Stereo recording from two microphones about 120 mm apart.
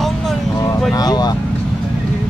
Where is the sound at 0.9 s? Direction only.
35° left (ahead or behind).